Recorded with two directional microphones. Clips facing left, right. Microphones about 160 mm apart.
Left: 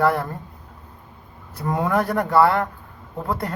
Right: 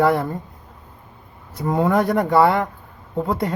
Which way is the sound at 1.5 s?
15° right (ahead or behind).